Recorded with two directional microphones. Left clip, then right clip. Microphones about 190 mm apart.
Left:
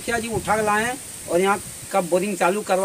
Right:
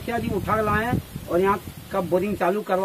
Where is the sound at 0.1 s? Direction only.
10° right (ahead or behind).